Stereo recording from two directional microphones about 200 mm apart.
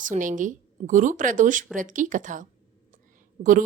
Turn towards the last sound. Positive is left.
turn(degrees=-40)  # may be behind; listen again after turning